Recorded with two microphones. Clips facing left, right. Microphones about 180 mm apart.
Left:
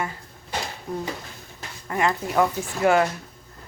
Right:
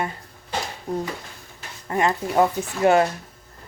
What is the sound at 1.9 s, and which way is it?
Speech, 30° right (ahead or behind).